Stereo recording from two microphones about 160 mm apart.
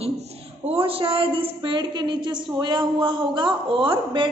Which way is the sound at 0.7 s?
35° right (ahead or behind).